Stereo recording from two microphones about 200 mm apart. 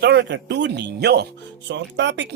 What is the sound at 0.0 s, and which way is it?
Speech, 60° right (ahead or behind).